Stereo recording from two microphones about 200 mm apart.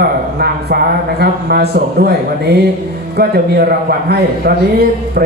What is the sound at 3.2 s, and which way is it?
A man's voice, 50° right (ahead or behind).